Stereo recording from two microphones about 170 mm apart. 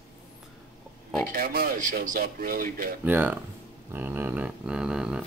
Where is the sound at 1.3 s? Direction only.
60° right (ahead or behind).